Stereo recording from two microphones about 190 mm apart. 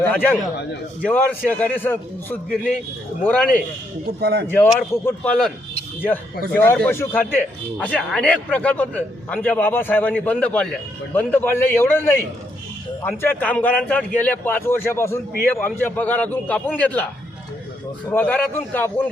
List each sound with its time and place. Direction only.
0.0 s a man's voice: 10° left (ahead or behind)
4.2 s speech: 55° right (ahead or behind)
4.4 s a man's voice: 10° left (ahead or behind)
18.1 s a man's voice: 10° left (ahead or behind)